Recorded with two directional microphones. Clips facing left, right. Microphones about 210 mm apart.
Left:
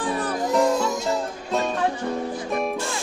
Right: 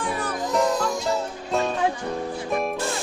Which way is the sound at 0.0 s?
35° left (ahead or behind).